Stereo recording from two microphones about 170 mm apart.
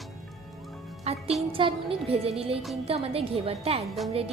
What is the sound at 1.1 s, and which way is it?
Music, 35° right (ahead or behind).